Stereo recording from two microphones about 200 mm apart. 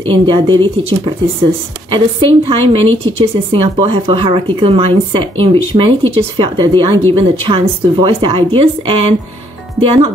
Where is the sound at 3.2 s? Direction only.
25° right (ahead or behind).